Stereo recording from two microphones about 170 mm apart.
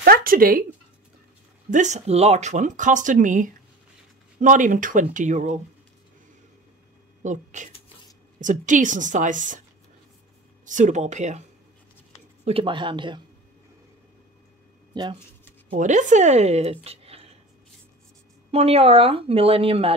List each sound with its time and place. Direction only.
0.0 s speech: 60° right (ahead or behind)
1.7 s speech: 45° right (ahead or behind)
7.2 s speech: 45° right (ahead or behind)
10.6 s speech: 50° right (ahead or behind)
12.4 s speech: 30° right (ahead or behind)
15.8 s speech: 45° right (ahead or behind)
18.5 s speech: 35° right (ahead or behind)